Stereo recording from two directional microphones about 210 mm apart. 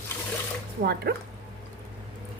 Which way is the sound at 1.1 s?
50° right (ahead or behind).